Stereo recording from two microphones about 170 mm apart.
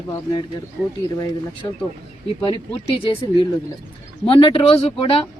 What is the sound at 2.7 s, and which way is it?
Speech, 35° left (ahead or behind).